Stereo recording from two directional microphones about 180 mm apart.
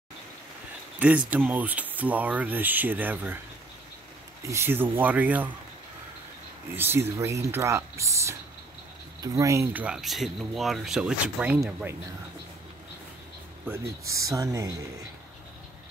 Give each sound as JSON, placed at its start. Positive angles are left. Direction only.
{"t": 0.9, "sound": "speech", "side_deg": -5}
{"t": 4.5, "sound": "speech", "side_deg": -15}
{"t": 6.8, "sound": "speech", "side_deg": -15}
{"t": 14.2, "sound": "speech", "side_deg": -20}